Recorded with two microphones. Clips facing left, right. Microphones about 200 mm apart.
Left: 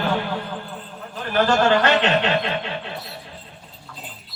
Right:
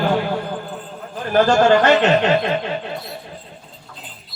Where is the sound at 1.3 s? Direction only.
45° right (ahead or behind).